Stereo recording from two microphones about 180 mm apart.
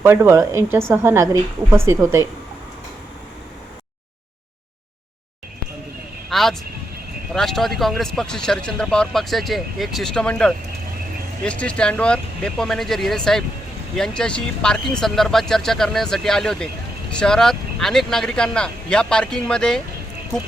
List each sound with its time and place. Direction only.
0.0 s speech: 15° right (ahead or behind)
6.3 s vehicle: centre (ahead or behind)
7.3 s speech: centre (ahead or behind)